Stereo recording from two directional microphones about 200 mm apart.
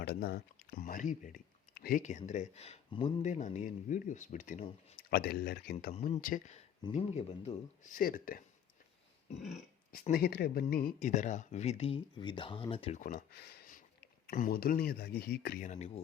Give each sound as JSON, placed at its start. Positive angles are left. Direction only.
{"t": 0.0, "sound": "speech", "side_deg": 50}
{"t": 5.1, "sound": "speech", "side_deg": 50}
{"t": 5.9, "sound": "speech", "side_deg": 40}
{"t": 7.9, "sound": "speech", "side_deg": 45}
{"t": 9.9, "sound": "speech", "side_deg": 50}
{"t": 13.0, "sound": "speech", "side_deg": 50}